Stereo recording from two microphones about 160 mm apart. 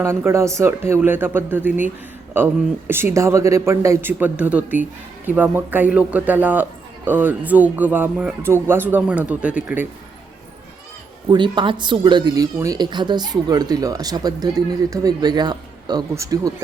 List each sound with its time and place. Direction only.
0.0 s a man's voice: 15° right (ahead or behind)
11.3 s speech: 30° right (ahead or behind)